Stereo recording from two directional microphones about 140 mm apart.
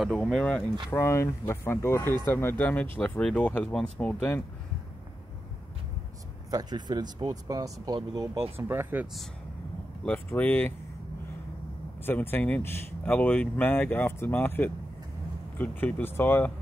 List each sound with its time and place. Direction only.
0.2 s speech: 10° left (ahead or behind)
0.8 s speech: 20° left (ahead or behind)
6.5 s speech: 30° right (ahead or behind)
8.5 s speech: 15° right (ahead or behind)
10.0 s speech: 10° left (ahead or behind)
12.0 s speech: 15° left (ahead or behind)